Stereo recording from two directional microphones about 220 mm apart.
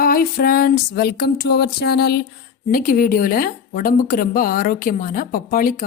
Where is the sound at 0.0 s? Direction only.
40° left (ahead or behind).